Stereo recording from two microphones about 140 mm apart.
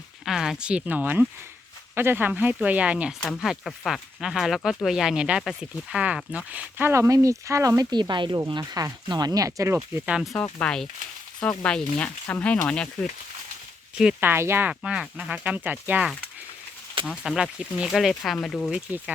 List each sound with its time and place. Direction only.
0.3 s speech: 5° right (ahead or behind)
10.3 s speech: 10° left (ahead or behind)
14.0 s speech: 10° right (ahead or behind)
18.7 s speech: 10° right (ahead or behind)